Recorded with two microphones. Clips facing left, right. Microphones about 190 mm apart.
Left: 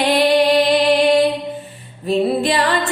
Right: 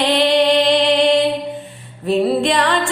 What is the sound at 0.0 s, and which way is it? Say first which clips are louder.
Music: even; 10° left (ahead or behind).